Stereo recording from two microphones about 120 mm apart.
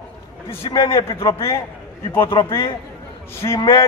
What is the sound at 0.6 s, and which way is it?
Speech, 40° left (ahead or behind).